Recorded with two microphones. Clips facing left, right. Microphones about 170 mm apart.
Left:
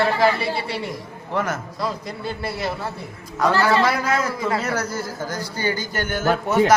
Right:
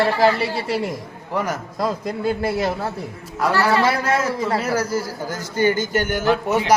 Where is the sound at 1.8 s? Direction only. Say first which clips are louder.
Right 5 dB; 45° right (ahead or behind).